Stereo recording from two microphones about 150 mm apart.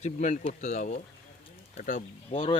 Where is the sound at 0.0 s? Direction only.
50° left (ahead or behind).